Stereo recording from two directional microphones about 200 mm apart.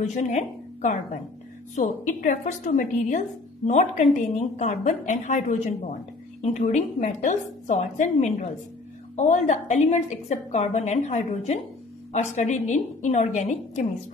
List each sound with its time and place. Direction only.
0.1 s a woman's voice: 35° left (ahead or behind)